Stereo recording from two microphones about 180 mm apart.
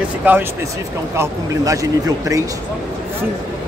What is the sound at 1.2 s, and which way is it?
Speech, 20° right (ahead or behind).